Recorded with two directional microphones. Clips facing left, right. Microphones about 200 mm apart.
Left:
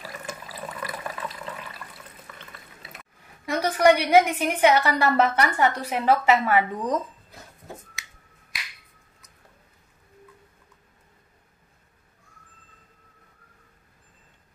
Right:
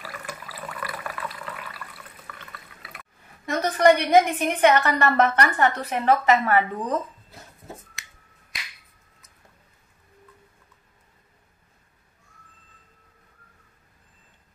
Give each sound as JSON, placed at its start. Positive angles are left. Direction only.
{"t": 0.0, "sound": "water", "side_deg": 20}
{"t": 3.4, "sound": "a woman's voice", "side_deg": 10}